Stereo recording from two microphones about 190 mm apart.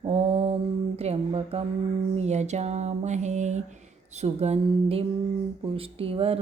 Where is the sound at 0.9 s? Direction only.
30° right (ahead or behind).